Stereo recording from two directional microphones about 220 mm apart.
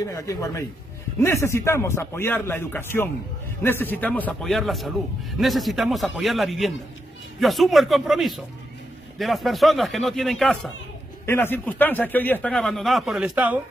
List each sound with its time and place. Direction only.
0.0 s a man's voice: 15° left (ahead or behind); by 13.6 s 5° right (ahead or behind)